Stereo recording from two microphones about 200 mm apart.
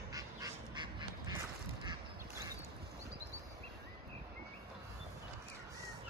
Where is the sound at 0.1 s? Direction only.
20° right (ahead or behind).